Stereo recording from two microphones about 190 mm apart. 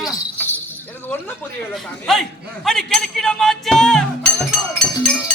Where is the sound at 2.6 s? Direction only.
Centre (ahead or behind).